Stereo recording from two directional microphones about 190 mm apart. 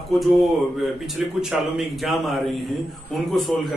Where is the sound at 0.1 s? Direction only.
Centre (ahead or behind).